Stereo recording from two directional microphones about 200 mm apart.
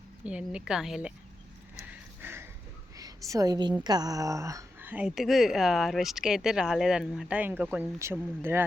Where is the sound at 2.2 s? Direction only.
10° right (ahead or behind).